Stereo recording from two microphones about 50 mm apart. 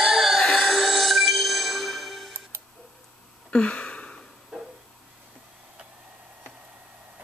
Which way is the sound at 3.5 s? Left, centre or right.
Left.